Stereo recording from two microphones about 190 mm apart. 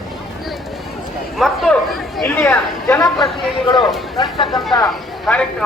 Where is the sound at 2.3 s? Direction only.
15° left (ahead or behind).